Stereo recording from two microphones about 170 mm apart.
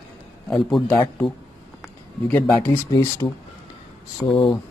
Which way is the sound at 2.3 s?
10° left (ahead or behind).